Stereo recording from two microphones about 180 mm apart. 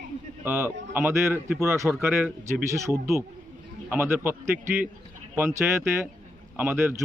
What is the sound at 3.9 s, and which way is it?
A man's voice, 10° right (ahead or behind).